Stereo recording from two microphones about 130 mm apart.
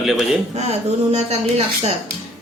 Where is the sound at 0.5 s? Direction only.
60° right (ahead or behind).